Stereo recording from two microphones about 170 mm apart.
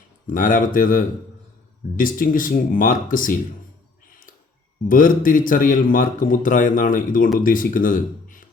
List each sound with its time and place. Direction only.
0.3 s speech: 50° left (ahead or behind)
4.0 s a sound: 55° left (ahead or behind)
4.9 s speech: 55° left (ahead or behind)